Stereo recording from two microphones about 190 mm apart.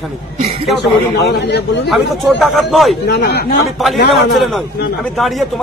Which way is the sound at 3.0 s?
60° left (ahead or behind).